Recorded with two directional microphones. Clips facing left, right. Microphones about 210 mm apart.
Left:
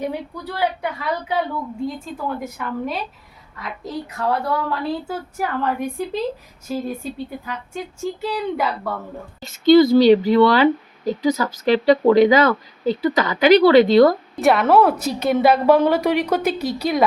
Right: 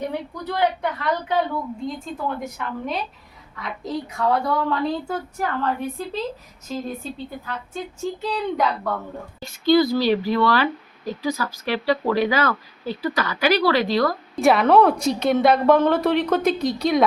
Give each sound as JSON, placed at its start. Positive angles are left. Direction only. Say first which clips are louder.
{"t": 0.4, "sound": "a woman's voice", "louder": "right 1 dB", "side_deg": 10}
{"t": 2.4, "sound": "a woman's voice", "louder": "left 3 dB", "side_deg": 5}
{"t": 9.4, "sound": "speech", "louder": "left 5 dB", "side_deg": 20}
{"t": 14.3, "sound": "a woman's voice", "louder": "right 3 dB", "side_deg": 0}